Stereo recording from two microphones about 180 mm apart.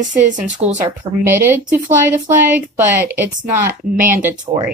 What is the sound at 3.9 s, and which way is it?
Speech, 50° right (ahead or behind).